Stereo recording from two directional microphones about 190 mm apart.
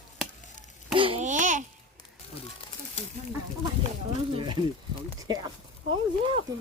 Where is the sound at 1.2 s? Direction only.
40° right (ahead or behind).